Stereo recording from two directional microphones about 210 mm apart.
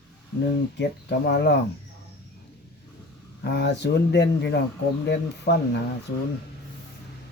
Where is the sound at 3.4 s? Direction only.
55° left (ahead or behind).